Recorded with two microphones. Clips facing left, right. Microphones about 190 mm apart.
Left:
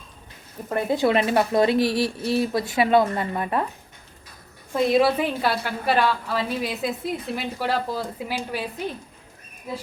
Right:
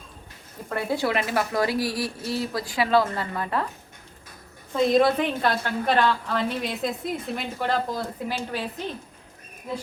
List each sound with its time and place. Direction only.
0.7 s speech: 20° left (ahead or behind)
4.7 s a woman's voice: 5° left (ahead or behind)